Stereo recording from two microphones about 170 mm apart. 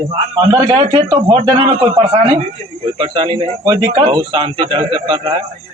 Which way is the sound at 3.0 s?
30° right (ahead or behind).